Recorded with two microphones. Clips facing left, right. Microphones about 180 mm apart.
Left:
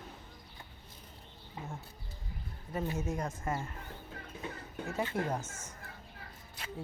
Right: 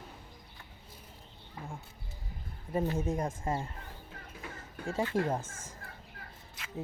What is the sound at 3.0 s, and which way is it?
Speech, 30° right (ahead or behind).